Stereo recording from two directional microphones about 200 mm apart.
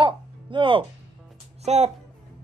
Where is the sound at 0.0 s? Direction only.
25° right (ahead or behind).